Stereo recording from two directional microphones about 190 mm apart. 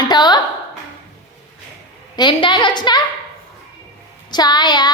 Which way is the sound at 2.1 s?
25° left (ahead or behind).